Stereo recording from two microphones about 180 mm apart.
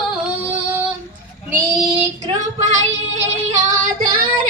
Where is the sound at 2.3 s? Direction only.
40° right (ahead or behind).